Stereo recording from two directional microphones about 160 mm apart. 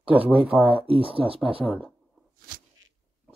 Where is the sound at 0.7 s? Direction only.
35° right (ahead or behind).